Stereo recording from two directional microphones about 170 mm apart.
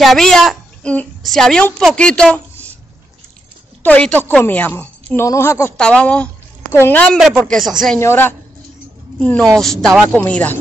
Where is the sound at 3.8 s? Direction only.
10° left (ahead or behind).